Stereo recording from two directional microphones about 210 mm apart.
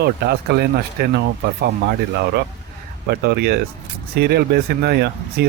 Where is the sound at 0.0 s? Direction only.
50° right (ahead or behind).